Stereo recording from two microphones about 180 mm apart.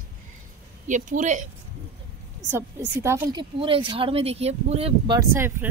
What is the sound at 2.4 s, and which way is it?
A woman's voice, 15° right (ahead or behind).